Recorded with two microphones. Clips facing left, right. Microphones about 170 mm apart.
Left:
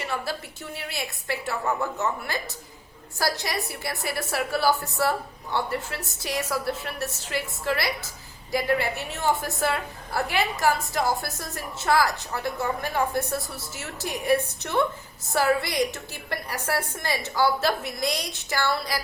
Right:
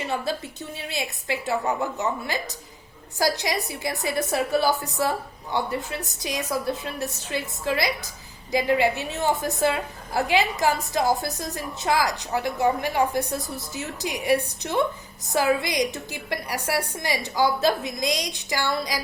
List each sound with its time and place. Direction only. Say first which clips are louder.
0.0 s a woman's voice: right 3 dB; 20° right (ahead or behind)